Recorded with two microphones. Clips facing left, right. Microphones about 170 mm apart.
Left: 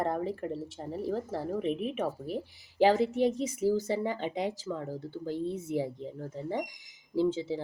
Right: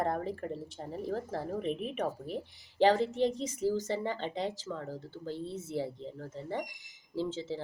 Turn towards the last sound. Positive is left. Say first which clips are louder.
# left 6 dB
turn(degrees=10)  # may be behind; listen again after turning